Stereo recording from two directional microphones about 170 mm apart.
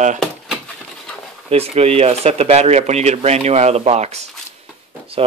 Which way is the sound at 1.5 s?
35° right (ahead or behind).